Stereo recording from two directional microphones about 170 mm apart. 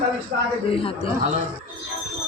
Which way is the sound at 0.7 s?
30° left (ahead or behind).